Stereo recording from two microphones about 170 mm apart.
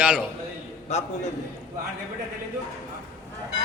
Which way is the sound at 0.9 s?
40° left (ahead or behind).